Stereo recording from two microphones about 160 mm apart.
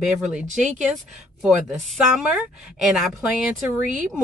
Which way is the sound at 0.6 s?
50° right (ahead or behind).